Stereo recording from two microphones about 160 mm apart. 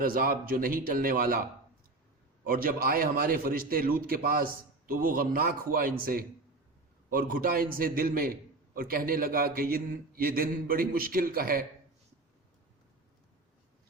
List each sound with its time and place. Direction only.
0.0 s a man's voice: 65° right (ahead or behind)